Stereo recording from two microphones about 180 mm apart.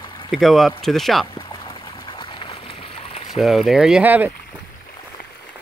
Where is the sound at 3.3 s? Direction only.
Centre (ahead or behind).